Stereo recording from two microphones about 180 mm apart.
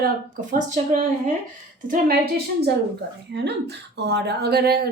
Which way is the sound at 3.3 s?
70° right (ahead or behind).